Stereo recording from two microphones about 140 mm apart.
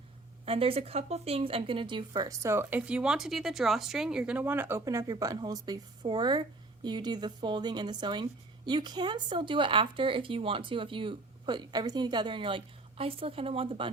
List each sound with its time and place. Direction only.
0.4 s speech: 40° right (ahead or behind)